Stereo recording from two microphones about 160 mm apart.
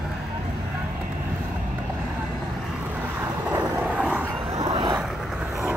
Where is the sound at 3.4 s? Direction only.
5° right (ahead or behind).